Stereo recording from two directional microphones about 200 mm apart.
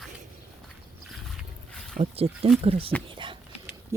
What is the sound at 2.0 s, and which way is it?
Speech, 30° right (ahead or behind).